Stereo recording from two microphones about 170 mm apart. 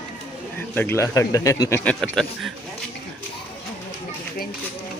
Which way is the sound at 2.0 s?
Centre (ahead or behind).